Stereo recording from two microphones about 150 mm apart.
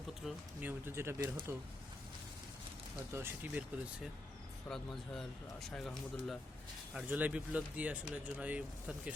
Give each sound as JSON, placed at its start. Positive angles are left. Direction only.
{"t": 0.1, "sound": "speech", "side_deg": -5}
{"t": 3.1, "sound": "speech", "side_deg": -15}
{"t": 4.7, "sound": "speech", "side_deg": 5}
{"t": 6.9, "sound": "speech", "side_deg": -10}